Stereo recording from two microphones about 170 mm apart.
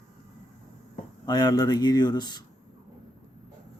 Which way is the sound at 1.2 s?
25° left (ahead or behind).